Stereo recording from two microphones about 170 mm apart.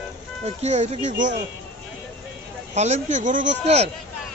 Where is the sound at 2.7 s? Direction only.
40° right (ahead or behind).